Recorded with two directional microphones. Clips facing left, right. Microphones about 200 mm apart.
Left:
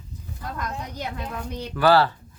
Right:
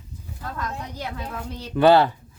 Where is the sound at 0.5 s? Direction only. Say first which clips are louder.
Even; 15° left (ahead or behind).